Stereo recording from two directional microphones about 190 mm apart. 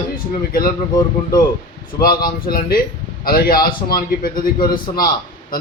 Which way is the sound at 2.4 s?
50° left (ahead or behind).